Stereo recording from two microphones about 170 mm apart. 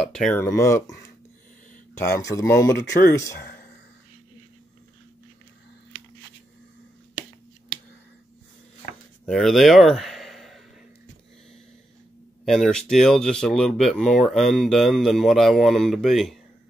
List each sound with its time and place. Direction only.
0.1 s speech: 5° left (ahead or behind)
2.0 s speech: 20° left (ahead or behind)
9.2 s speech: centre (ahead or behind)
12.4 s speech: centre (ahead or behind)